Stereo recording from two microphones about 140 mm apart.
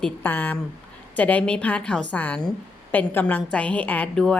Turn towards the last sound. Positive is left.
turn(degrees=5)  # may be behind; listen again after turning